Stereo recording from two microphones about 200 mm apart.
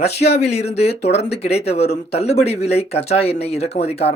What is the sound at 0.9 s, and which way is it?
Speech, 55° left (ahead or behind).